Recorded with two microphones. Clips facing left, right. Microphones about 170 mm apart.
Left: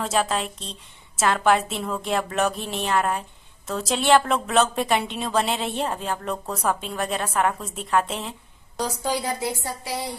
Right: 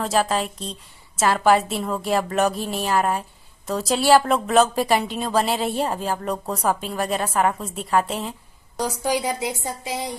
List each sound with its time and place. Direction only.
0.0 s a woman's voice: centre (ahead or behind)
8.7 s a woman's voice: 15° right (ahead or behind)